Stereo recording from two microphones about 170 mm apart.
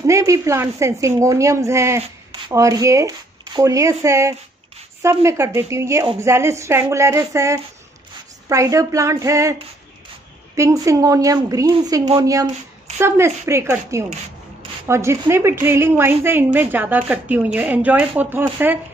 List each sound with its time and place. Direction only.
0.0 s a woman's voice: 20° right (ahead or behind)